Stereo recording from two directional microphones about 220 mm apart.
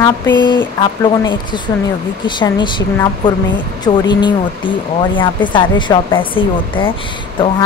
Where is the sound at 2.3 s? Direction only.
20° left (ahead or behind).